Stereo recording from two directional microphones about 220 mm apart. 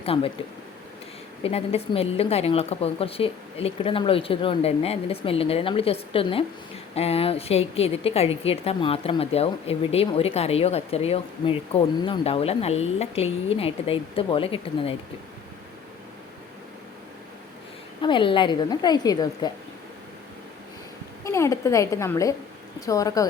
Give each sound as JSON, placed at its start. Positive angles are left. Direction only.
{"t": 0.0, "sound": "speech", "side_deg": 25}
{"t": 1.5, "sound": "a woman's voice", "side_deg": 25}
{"t": 18.0, "sound": "a woman's voice", "side_deg": 20}
{"t": 21.2, "sound": "a woman's voice", "side_deg": 15}